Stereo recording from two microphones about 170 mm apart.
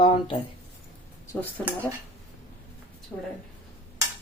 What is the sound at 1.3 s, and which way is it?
Speech, 10° left (ahead or behind).